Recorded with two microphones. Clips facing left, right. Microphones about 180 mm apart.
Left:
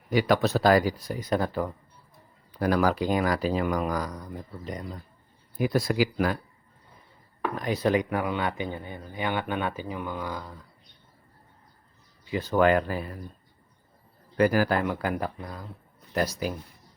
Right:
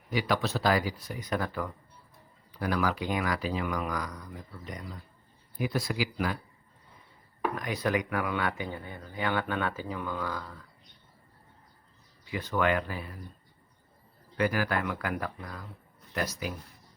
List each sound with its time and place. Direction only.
0.1 s speech: 50° left (ahead or behind); by 1.7 s 30° left (ahead or behind)
2.5 s speech: 45° left (ahead or behind)
5.5 s speech: 45° left (ahead or behind)
7.5 s speech: 30° left (ahead or behind)
12.2 s speech: 30° left (ahead or behind)
14.3 s speech: 40° left (ahead or behind)
16.4 s speech: 35° left (ahead or behind)